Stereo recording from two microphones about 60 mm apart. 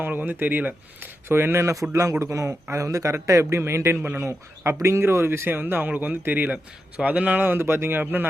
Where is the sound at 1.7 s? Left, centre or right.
Right.